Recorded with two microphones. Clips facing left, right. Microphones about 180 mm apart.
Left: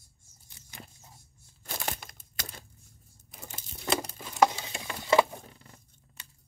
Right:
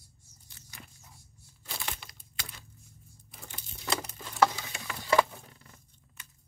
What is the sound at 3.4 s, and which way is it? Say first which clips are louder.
Tearing: left 4 dB; 45° left (ahead or behind).